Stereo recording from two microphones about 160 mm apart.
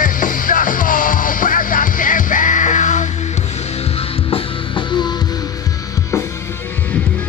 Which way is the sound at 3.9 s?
30° left (ahead or behind).